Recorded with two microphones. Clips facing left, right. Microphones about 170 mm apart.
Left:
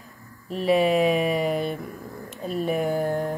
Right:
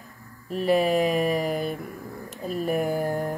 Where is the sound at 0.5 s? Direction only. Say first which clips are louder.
Left 1 dB; centre (ahead or behind).